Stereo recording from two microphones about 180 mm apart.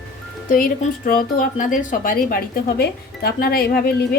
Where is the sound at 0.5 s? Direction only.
50° left (ahead or behind).